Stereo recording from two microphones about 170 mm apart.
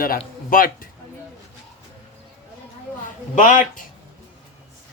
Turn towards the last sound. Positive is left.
turn(degrees=50)  # may be behind; listen again after turning